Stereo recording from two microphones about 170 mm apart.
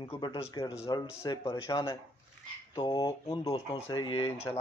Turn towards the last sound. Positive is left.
turn(degrees=25)  # may be behind; listen again after turning